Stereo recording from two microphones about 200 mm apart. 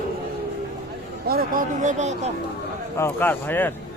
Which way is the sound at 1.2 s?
50° right (ahead or behind).